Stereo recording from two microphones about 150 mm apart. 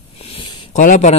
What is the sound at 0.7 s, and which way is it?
Speech, 55° left (ahead or behind).